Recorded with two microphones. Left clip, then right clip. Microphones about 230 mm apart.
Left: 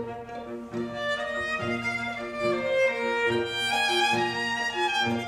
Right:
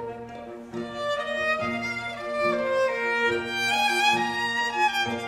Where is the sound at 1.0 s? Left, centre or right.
Right.